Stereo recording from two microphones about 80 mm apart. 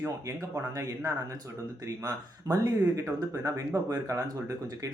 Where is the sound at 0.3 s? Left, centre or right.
Right.